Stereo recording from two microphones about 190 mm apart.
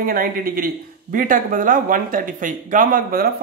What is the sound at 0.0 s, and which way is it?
Speech, 50° right (ahead or behind).